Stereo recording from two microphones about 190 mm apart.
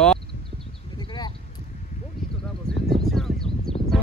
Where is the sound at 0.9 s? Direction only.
20° left (ahead or behind).